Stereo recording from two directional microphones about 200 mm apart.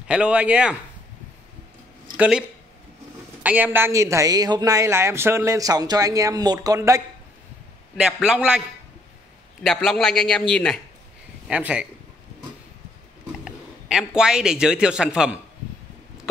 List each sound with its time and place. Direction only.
0.1 s a man's voice: 5° right (ahead or behind)
2.1 s speech: 5° right (ahead or behind)
3.4 s a woman's voice: 10° right (ahead or behind)
8.0 s a man's voice: 5° right (ahead or behind)
11.4 s a man's voice: 5° right (ahead or behind)
13.4 s a man's voice: 5° right (ahead or behind)